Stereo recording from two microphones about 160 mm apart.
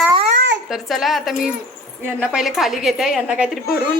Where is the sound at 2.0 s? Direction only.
10° right (ahead or behind).